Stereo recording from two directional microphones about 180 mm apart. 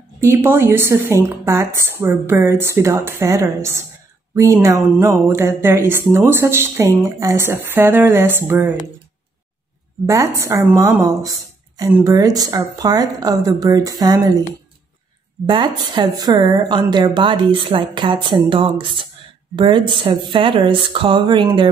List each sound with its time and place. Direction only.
0.2 s speech: 15° right (ahead or behind)
10.0 s speech: 15° right (ahead or behind)
15.4 s speech: 25° right (ahead or behind)